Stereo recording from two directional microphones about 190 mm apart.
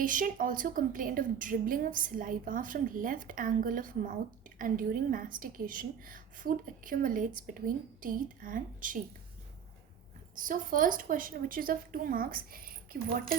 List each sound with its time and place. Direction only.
0.0 s a woman's voice: 45° right (ahead or behind)
10.3 s a woman's voice: 45° right (ahead or behind)